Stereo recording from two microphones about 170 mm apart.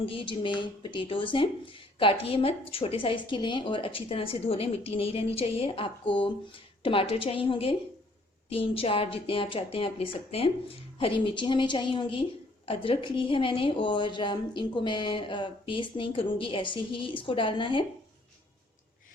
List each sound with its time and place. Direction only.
0.0 s a woman's voice: 30° left (ahead or behind)